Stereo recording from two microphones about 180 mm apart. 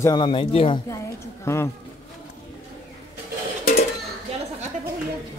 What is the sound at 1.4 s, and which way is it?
Speech, 15° left (ahead or behind).